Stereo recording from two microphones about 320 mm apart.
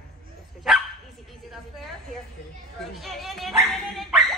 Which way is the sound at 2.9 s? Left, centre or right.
Centre.